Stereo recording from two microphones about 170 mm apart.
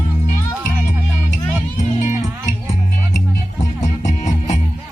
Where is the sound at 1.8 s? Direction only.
45° left (ahead or behind).